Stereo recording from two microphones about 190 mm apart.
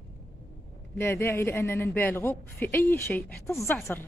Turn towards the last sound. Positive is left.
turn(degrees=15)  # may be behind; listen again after turning